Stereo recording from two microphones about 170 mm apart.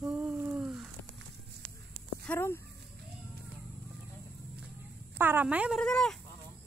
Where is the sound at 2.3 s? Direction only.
15° left (ahead or behind).